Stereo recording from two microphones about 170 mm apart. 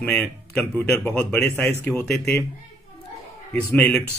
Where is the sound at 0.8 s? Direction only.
10° left (ahead or behind).